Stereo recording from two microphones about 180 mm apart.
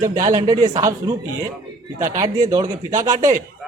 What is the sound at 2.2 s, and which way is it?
A man's voice, 20° right (ahead or behind).